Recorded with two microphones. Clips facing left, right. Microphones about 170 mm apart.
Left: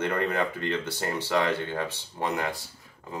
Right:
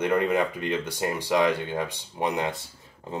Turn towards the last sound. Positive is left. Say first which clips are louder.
# right 4 dB
turn(degrees=-30)  # may be behind; listen again after turning